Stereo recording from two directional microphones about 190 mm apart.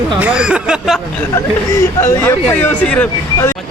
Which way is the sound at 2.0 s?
15° left (ahead or behind).